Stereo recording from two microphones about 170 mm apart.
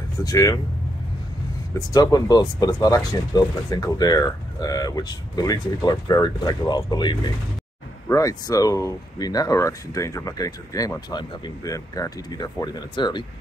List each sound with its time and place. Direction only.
0.2 s speech: 20° left (ahead or behind)
1.9 s speech: 20° left (ahead or behind)